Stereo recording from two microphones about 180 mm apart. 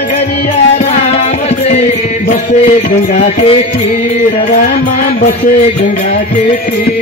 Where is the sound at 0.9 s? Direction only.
35° left (ahead or behind).